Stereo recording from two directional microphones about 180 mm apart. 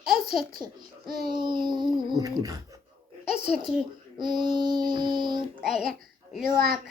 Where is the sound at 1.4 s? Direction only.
25° right (ahead or behind).